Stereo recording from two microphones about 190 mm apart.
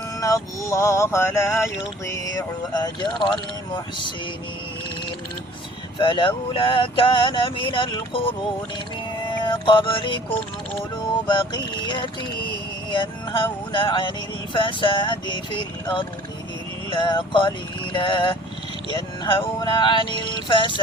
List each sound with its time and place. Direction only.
0.2 s a sound: 20° left (ahead or behind)
6.0 s speech: 25° left (ahead or behind)
9.4 s speech: 25° left (ahead or behind)